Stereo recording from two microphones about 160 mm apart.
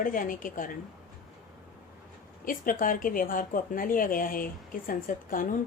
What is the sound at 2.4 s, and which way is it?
A woman's voice, 60° left (ahead or behind).